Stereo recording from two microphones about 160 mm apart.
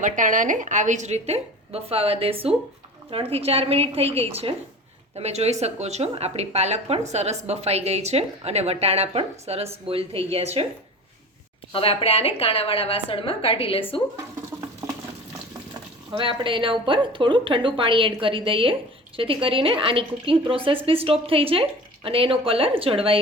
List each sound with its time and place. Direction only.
0.0 s a woman's voice: 55° right (ahead or behind)
11.7 s a woman's voice: 35° left (ahead or behind)
16.1 s a woman's voice: 30° right (ahead or behind)